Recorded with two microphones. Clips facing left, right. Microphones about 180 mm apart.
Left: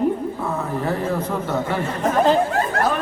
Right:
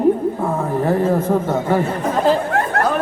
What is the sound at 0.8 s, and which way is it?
Speech, 45° right (ahead or behind).